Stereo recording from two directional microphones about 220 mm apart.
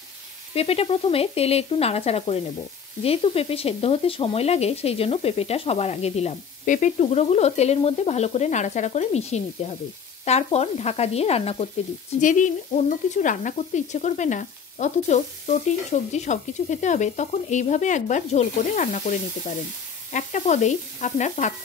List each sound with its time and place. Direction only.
0.6 s speech: 25° left (ahead or behind)
12.2 s stir: 35° left (ahead or behind)